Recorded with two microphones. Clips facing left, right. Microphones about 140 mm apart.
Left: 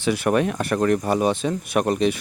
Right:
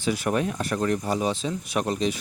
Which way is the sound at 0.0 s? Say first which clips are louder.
Left 5 dB; 65° left (ahead or behind).